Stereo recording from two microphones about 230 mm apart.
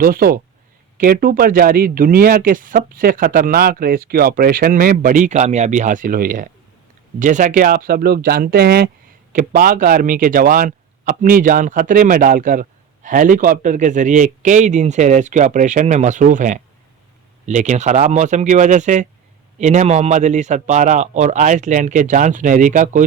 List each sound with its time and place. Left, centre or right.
0.0 s speech: right